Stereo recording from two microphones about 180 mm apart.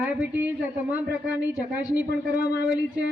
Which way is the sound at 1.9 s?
60° left (ahead or behind).